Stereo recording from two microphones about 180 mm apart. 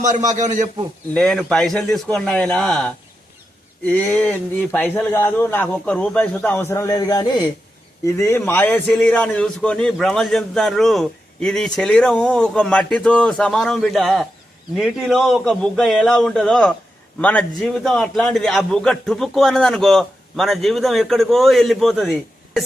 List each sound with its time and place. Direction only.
0.0 s a man's voice: 45° right (ahead or behind)
1.1 s a man's voice: centre (ahead or behind)